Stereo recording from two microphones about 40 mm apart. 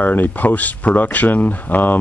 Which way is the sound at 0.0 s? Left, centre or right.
Left.